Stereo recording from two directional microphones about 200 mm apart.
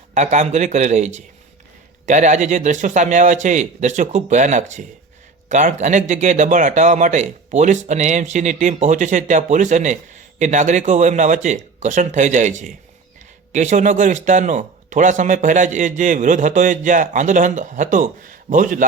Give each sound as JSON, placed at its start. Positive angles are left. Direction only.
{"t": 0.1, "sound": "a man's voice", "side_deg": -35}